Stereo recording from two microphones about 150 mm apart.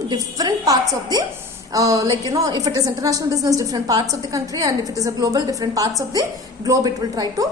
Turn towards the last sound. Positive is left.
turn(degrees=-25)  # may be behind; listen again after turning